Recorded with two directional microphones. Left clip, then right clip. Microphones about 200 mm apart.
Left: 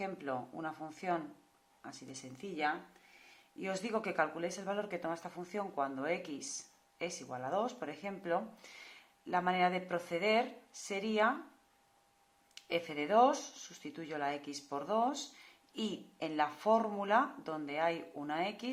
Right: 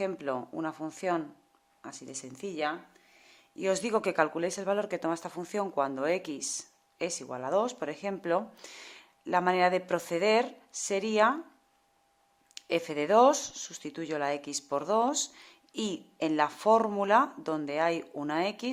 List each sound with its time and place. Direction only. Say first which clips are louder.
0.0 s speech: right 7 dB; 45° right (ahead or behind)
12.5 s speech: right 6 dB; 50° right (ahead or behind)